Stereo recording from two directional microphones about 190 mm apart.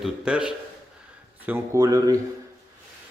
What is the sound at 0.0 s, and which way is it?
A man's voice, 5° right (ahead or behind).